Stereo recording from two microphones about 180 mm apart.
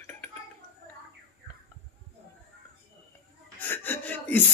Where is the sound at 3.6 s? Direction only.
10° left (ahead or behind).